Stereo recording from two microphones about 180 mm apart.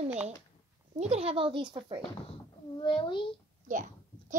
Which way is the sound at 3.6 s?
45° right (ahead or behind).